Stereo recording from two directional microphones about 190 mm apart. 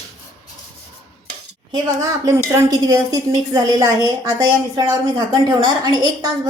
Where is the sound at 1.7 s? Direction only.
20° right (ahead or behind).